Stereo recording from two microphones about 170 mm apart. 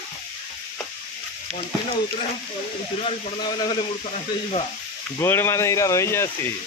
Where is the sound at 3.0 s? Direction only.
25° left (ahead or behind).